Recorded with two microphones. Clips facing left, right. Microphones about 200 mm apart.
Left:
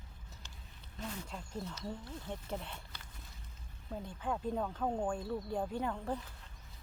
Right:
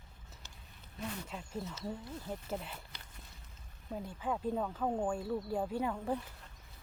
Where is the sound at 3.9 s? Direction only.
5° right (ahead or behind).